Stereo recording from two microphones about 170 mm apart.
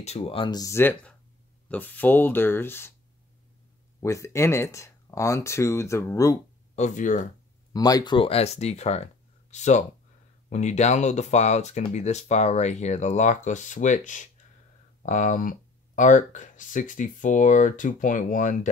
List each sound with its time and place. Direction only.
0.0 s speech: 35° left (ahead or behind); by 2.9 s 15° left (ahead or behind)
4.0 s speech: 15° left (ahead or behind)
6.7 s speech: 45° left (ahead or behind)
7.7 s speech: 20° left (ahead or behind); by 18.7 s 50° left (ahead or behind)